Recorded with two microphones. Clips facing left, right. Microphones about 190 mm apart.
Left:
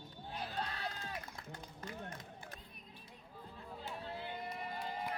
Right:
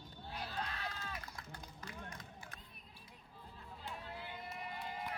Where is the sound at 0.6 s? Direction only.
30° left (ahead or behind).